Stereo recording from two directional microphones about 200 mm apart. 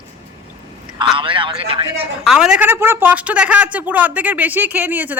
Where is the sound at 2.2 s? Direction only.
5° right (ahead or behind).